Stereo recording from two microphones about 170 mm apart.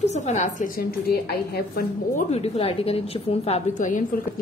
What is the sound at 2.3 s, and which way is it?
A woman's voice, 35° left (ahead or behind).